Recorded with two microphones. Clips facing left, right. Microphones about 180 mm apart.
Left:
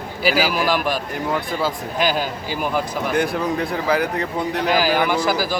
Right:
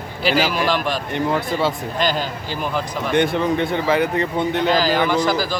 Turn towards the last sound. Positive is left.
turn(degrees=10)  # may be behind; listen again after turning